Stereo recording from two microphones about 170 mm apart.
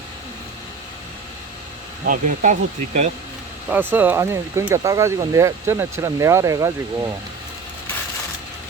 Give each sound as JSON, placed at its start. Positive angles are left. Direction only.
{"t": 2.0, "sound": "speech", "side_deg": -50}
{"t": 3.7, "sound": "speech", "side_deg": -10}